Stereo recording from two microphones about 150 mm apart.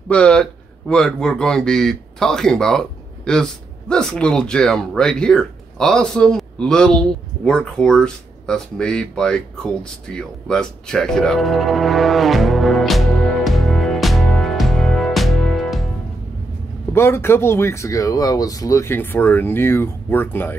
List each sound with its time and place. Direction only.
0.1 s speech: 5° left (ahead or behind)
16.9 s speech: 15° left (ahead or behind)